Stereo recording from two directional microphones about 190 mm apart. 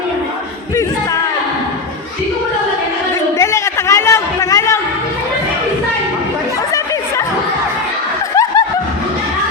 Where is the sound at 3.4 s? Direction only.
15° left (ahead or behind).